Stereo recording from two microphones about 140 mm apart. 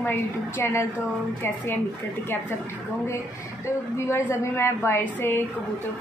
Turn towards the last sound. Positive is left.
turn(degrees=15)  # may be behind; listen again after turning